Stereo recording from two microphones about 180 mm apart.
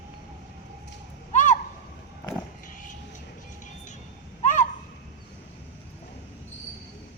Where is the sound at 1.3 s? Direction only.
45° left (ahead or behind).